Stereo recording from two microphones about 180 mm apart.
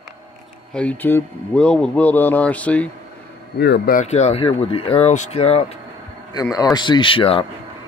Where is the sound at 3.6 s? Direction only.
65° left (ahead or behind).